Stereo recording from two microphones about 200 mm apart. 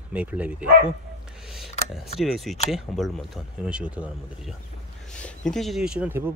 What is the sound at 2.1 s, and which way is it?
Speech, centre (ahead or behind).